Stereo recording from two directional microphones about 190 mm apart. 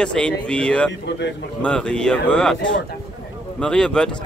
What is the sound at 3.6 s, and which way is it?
Speech, 5° left (ahead or behind).